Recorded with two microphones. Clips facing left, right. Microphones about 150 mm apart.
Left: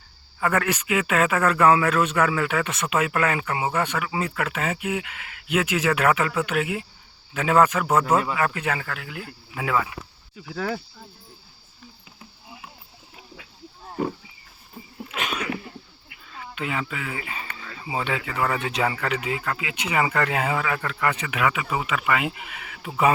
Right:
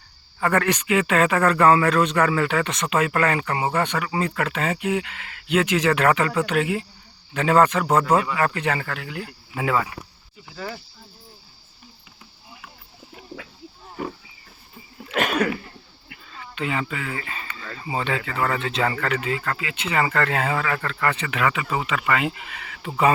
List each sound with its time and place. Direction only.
0.3 s a man's voice: 5° left (ahead or behind)
10.5 s speech: 90° left
15.1 s a sound: 55° right (ahead or behind)
16.3 s speech: 5° left (ahead or behind)